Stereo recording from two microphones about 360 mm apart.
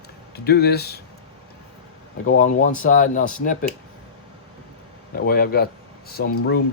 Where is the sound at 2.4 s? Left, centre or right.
Centre.